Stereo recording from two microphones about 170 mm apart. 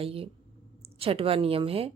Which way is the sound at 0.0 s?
35° right (ahead or behind).